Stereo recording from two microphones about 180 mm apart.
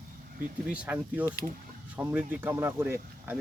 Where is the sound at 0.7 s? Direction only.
5° right (ahead or behind).